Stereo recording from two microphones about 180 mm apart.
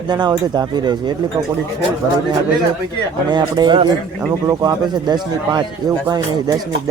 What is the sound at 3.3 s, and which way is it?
Speech, 25° right (ahead or behind).